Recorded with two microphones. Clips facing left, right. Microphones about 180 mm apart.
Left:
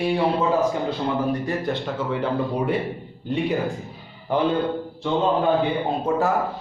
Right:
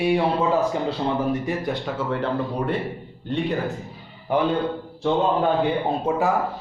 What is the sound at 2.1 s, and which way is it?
Speech, centre (ahead or behind).